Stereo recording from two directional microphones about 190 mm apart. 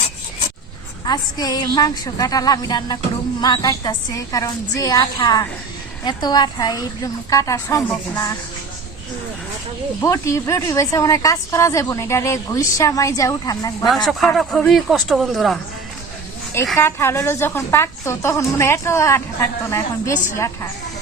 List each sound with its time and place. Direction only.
1.0 s a woman's voice: 20° left (ahead or behind)
10.0 s a woman's voice: 15° left (ahead or behind)
13.8 s speech: centre (ahead or behind)
16.7 s a woman's voice: 10° left (ahead or behind)
20.3 s a woman's voice: 15° left (ahead or behind)